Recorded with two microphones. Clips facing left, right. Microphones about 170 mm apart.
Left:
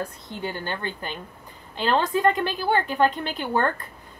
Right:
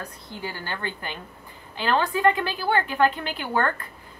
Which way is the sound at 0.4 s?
20° left (ahead or behind).